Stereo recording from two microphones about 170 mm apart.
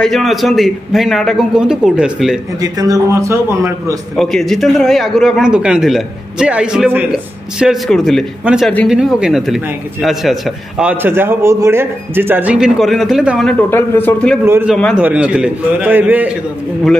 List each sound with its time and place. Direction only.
0.0 s a man's voice: centre (ahead or behind)
2.6 s a man's voice: 20° right (ahead or behind)
4.2 s a man's voice: centre (ahead or behind)
13.7 s speech: 10° left (ahead or behind)
14.4 s a man's voice: 15° right (ahead or behind)